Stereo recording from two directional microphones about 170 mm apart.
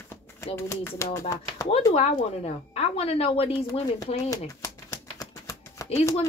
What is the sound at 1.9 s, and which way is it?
A woman's voice, 35° left (ahead or behind).